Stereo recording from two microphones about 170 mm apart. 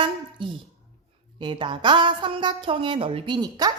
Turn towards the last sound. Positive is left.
turn(degrees=-25)  # may be behind; listen again after turning